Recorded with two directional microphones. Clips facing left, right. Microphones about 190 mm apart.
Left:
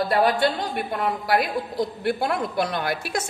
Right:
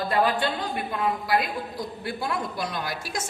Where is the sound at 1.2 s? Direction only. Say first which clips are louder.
Left 3 dB; 65° left (ahead or behind).